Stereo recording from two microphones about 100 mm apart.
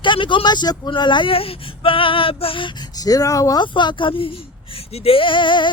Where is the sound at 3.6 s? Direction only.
50° left (ahead or behind).